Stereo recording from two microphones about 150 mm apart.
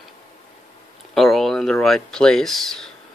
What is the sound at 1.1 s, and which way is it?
Speech, centre (ahead or behind).